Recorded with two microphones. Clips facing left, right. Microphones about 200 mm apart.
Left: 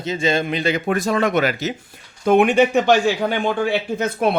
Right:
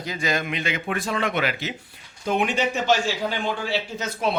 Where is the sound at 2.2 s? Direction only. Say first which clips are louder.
Left 9 dB; 55° left (ahead or behind).